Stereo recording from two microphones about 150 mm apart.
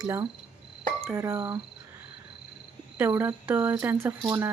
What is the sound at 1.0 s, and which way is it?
Speech, 15° right (ahead or behind).